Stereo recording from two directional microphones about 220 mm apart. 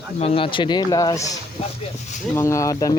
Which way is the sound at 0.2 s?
25° left (ahead or behind).